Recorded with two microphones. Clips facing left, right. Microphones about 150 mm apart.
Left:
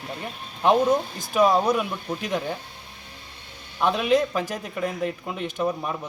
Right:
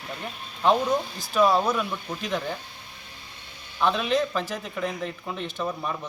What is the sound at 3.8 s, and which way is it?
Speech, 15° left (ahead or behind).